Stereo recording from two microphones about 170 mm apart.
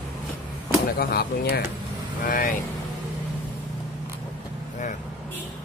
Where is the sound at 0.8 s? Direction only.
60° left (ahead or behind).